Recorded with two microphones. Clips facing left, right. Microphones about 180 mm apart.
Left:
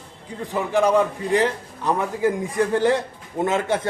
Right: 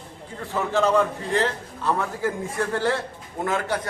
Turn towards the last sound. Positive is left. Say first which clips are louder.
# left 4 dB
turn(degrees=20)  # may be behind; listen again after turning